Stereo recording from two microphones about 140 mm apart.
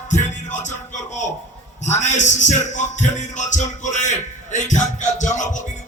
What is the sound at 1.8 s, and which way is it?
A man's voice, 55° left (ahead or behind).